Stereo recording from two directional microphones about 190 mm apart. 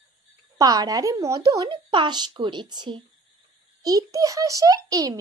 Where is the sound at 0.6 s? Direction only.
20° right (ahead or behind).